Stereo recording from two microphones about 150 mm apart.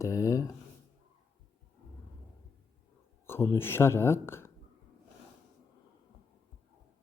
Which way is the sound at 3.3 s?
15° left (ahead or behind).